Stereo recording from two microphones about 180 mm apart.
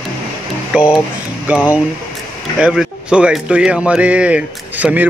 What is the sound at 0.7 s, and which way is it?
Speech, 5° right (ahead or behind).